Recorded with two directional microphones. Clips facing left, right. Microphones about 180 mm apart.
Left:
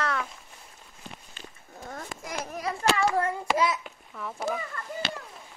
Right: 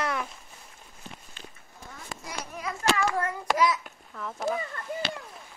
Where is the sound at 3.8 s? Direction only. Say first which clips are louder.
Even; centre (ahead or behind).